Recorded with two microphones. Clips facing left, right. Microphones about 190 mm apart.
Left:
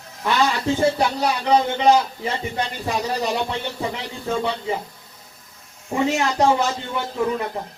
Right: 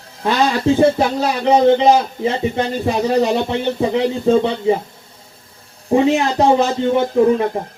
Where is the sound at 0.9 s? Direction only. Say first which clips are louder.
Right 4 dB; 25° right (ahead or behind).